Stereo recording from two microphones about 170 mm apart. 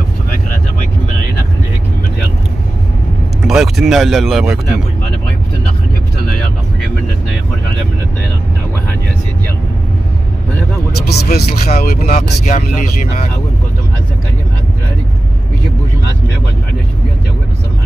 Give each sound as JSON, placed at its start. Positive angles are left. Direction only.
{"t": 3.4, "sound": "speech", "side_deg": 0}
{"t": 11.0, "sound": "music", "side_deg": 70}
{"t": 12.4, "sound": "speech", "side_deg": 55}